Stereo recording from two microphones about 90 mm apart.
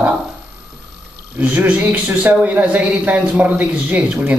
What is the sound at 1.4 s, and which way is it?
A man's voice, 15° right (ahead or behind).